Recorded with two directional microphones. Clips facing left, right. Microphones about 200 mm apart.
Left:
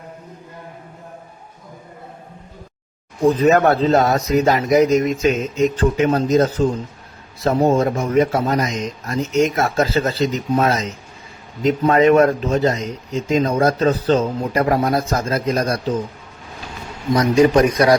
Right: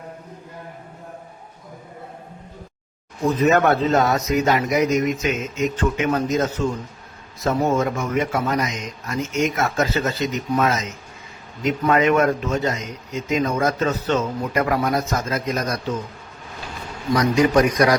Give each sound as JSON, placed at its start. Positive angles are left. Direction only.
{"t": 3.2, "sound": "speech", "side_deg": 30}
{"t": 17.2, "sound": "a man's voice", "side_deg": 30}